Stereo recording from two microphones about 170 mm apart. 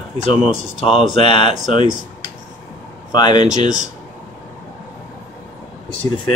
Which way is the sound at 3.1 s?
25° left (ahead or behind).